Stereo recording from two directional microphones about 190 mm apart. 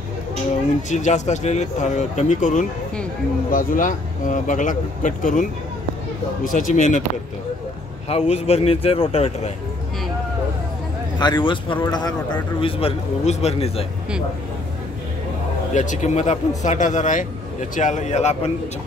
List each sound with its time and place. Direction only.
0.8 s a man's voice: 40° left (ahead or behind)
8.1 s a man's voice: 30° left (ahead or behind)
11.1 s a man's voice: 25° left (ahead or behind)
15.7 s a man's voice: 40° left (ahead or behind)